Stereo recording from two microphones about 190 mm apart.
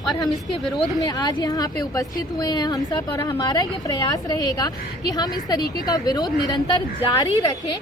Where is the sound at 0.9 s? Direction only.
20° left (ahead or behind).